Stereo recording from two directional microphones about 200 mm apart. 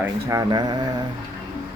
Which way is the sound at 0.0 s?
15° right (ahead or behind).